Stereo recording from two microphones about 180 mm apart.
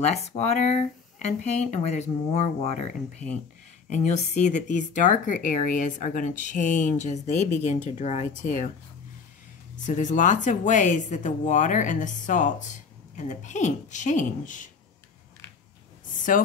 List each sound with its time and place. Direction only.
0.0 s speech: 35° left (ahead or behind)
3.9 s speech: 40° left (ahead or behind)
9.8 s speech: 45° left (ahead or behind)
16.3 s speech: 45° left (ahead or behind)